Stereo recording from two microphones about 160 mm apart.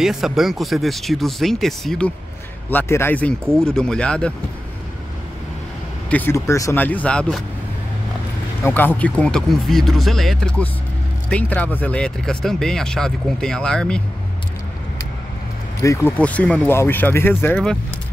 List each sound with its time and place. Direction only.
0.0 s speech: centre (ahead or behind)
6.0 s speech: 10° left (ahead or behind)
8.6 s speech: 10° left (ahead or behind)
15.8 s speech: 20° left (ahead or behind)
16.2 s speech: 10° left (ahead or behind)